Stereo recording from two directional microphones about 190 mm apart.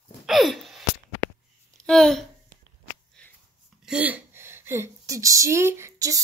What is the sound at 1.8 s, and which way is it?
Speech, centre (ahead or behind).